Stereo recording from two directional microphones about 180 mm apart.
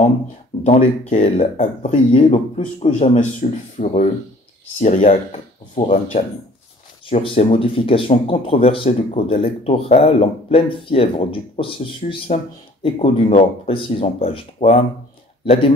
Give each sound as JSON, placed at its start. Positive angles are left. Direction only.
{"t": 0.7, "sound": "speech", "side_deg": 40}